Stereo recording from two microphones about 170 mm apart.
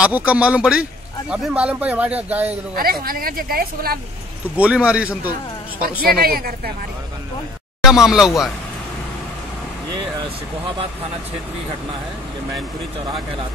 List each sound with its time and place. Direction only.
0.0 s speech: 10° right (ahead or behind)
2.7 s speech: 60° right (ahead or behind)
4.6 s speech: 5° right (ahead or behind)
6.0 s speech: 65° right (ahead or behind)
7.8 s speech: 5° right (ahead or behind)